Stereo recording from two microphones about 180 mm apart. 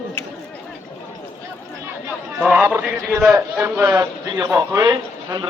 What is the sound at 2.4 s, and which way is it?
A man's voice, 5° right (ahead or behind).